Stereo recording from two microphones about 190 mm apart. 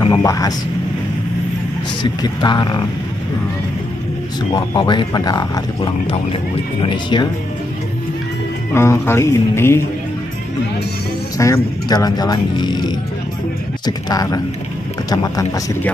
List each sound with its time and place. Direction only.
0.0 s speech: 20° left (ahead or behind)
2.2 s speech: 20° left (ahead or behind)
4.6 s speech: 25° left (ahead or behind)
8.7 s speech: 15° left (ahead or behind)
11.3 s speech: 15° left (ahead or behind)